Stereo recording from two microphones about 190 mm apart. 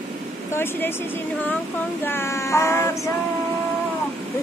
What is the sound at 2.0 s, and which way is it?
Child singing, 10° left (ahead or behind).